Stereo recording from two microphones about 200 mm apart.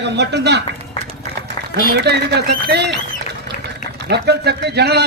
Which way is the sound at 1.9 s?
55° right (ahead or behind).